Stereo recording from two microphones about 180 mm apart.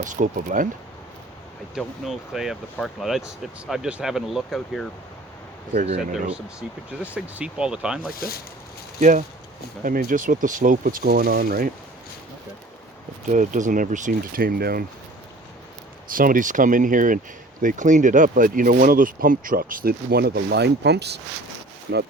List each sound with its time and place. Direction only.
0.0 s speech: 45° right (ahead or behind)
1.7 s speech: centre (ahead or behind)
6.3 s speech: 5° right (ahead or behind)
8.1 s speech: 55° left (ahead or behind)
9.0 s speech: 40° right (ahead or behind)
13.2 s speech: 45° right (ahead or behind)
16.0 s speech: 50° right (ahead or behind); by 21.2 s 65° right (ahead or behind)
21.9 s speech: 80° right